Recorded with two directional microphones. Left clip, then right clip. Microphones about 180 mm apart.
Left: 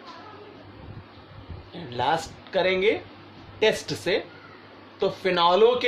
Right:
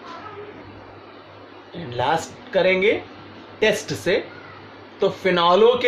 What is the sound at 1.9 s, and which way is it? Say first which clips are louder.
A man's voice: right 3 dB; 25° left (ahead or behind).